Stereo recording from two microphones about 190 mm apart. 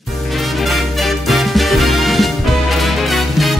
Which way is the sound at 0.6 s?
Centre (ahead or behind).